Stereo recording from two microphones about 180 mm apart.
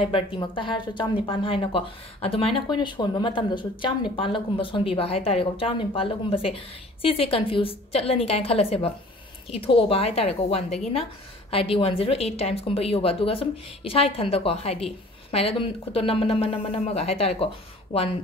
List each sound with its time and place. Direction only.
0.0 s a woman's voice: 30° left (ahead or behind)